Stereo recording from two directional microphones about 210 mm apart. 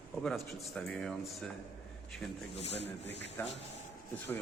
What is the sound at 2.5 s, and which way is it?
Speech, 30° left (ahead or behind).